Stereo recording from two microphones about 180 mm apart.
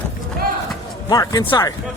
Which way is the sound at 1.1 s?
20° left (ahead or behind).